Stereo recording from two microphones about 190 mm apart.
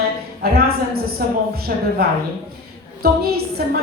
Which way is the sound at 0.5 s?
50° right (ahead or behind).